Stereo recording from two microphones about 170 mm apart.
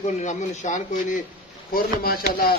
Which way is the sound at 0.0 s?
45° left (ahead or behind).